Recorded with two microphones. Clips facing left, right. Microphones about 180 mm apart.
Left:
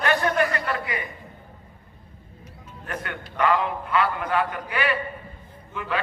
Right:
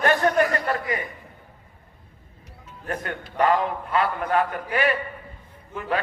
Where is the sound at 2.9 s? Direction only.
35° right (ahead or behind).